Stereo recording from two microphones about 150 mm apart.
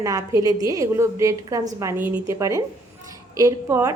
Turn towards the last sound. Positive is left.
turn(degrees=-20)  # may be behind; listen again after turning